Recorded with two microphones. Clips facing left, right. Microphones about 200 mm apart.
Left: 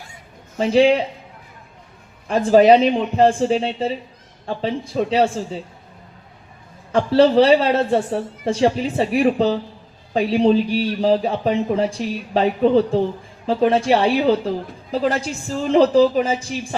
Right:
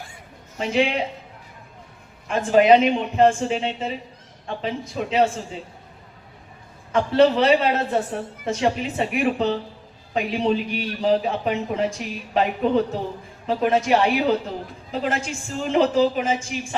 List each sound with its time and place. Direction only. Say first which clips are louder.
0.6 s speech: left 8 dB; 35° left (ahead or behind)
2.2 s speech: left 4 dB; 35° left (ahead or behind)
6.9 s speech: left 3 dB; 35° left (ahead or behind)